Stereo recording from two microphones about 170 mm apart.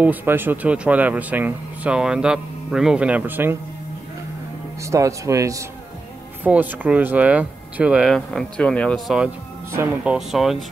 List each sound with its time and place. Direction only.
0.0 s speech: 10° right (ahead or behind)
4.8 s speech: 20° right (ahead or behind); by 9.3 s centre (ahead or behind)
9.7 s speech: 15° right (ahead or behind)
10.1 s speech: centre (ahead or behind)